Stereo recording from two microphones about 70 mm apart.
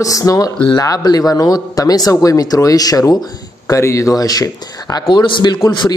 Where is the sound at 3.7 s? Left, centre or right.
Left.